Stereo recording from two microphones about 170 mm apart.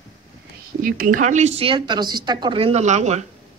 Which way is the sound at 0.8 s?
55° right (ahead or behind).